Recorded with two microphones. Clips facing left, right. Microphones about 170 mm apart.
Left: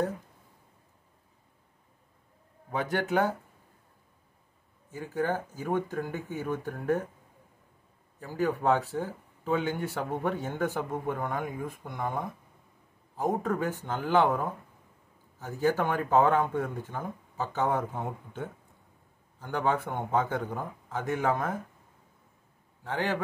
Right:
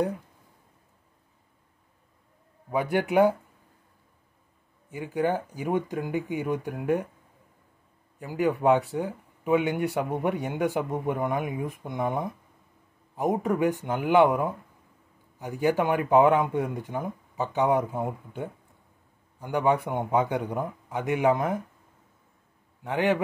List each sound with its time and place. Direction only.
2.7 s speech: 10° right (ahead or behind)
4.9 s speech: 20° right (ahead or behind)
8.2 s speech: 15° right (ahead or behind)